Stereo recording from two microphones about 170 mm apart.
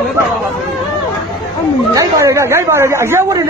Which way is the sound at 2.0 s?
15° right (ahead or behind).